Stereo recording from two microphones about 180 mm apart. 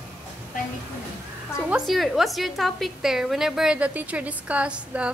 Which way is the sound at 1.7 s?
Centre (ahead or behind).